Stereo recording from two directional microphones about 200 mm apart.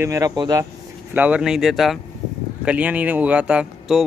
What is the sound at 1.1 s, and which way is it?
Speech, 5° right (ahead or behind).